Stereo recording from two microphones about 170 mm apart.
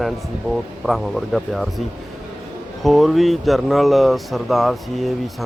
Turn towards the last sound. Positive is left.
turn(degrees=0)  # may be behind; listen again after turning